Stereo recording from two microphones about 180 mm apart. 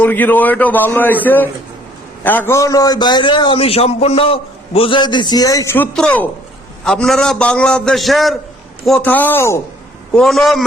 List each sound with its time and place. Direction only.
0.0 s a man's voice: 10° left (ahead or behind)
10.1 s a man's voice: centre (ahead or behind)